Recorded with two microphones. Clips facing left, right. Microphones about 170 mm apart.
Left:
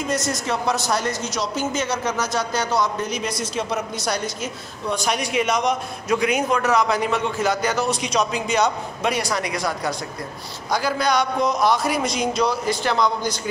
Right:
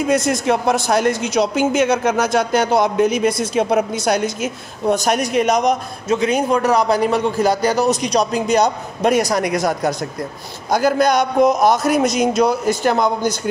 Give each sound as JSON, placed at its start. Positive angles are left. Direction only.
{"t": 0.0, "sound": "a man's voice", "side_deg": -60}
{"t": 6.0, "sound": "a man's voice", "side_deg": -25}